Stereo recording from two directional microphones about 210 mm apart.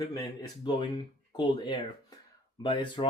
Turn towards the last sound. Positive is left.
turn(degrees=25)  # may be behind; listen again after turning